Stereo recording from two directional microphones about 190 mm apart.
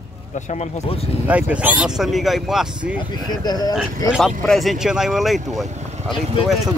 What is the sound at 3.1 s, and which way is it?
Speech, 20° left (ahead or behind).